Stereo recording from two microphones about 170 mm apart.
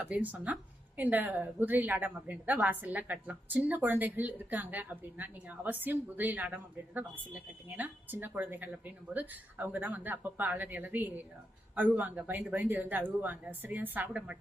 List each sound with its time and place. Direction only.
0.0 s speech: 10° right (ahead or behind)